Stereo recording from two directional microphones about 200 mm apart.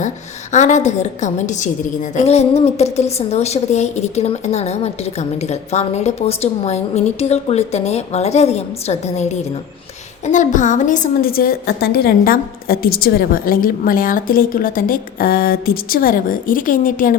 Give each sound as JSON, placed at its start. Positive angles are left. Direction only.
{"t": 0.5, "sound": "a woman's voice", "side_deg": 35}